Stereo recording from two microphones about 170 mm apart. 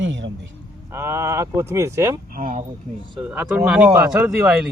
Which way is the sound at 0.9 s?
15° right (ahead or behind).